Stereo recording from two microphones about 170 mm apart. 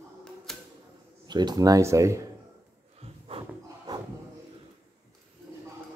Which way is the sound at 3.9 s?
20° right (ahead or behind).